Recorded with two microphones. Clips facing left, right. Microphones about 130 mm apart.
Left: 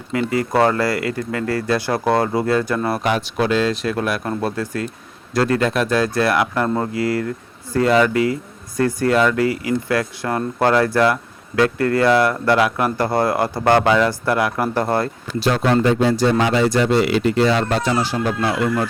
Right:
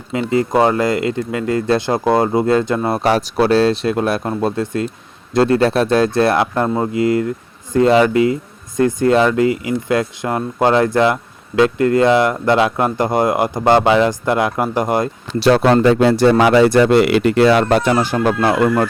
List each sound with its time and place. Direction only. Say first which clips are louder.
0.1 s speech: right 3 dB; 25° right (ahead or behind)
3.0 s speech: right 5 dB; 40° right (ahead or behind); by 15.1 s 15° right (ahead or behind)
15.4 s speech: right 5 dB; 75° right (ahead or behind); by 18.9 s 50° right (ahead or behind)